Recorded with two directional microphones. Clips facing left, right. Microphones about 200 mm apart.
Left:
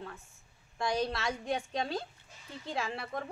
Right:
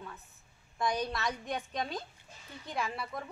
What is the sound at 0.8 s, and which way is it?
A woman's voice, 25° left (ahead or behind).